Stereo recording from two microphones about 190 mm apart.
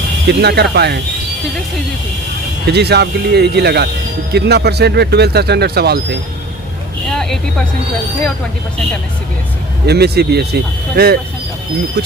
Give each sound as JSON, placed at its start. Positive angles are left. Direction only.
{"t": 0.3, "sound": "speech", "side_deg": -60}
{"t": 2.6, "sound": "speech", "side_deg": -60}
{"t": 7.1, "sound": "vehicle", "side_deg": 5}
{"t": 9.8, "sound": "speech", "side_deg": -60}